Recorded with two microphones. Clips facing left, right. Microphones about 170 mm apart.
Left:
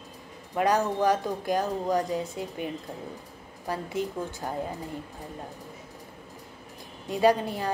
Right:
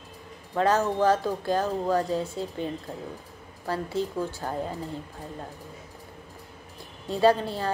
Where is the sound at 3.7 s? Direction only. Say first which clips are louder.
Right 2 dB; 15° left (ahead or behind).